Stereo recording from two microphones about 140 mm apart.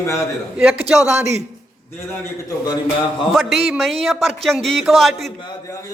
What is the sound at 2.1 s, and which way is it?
Speech, 20° left (ahead or behind).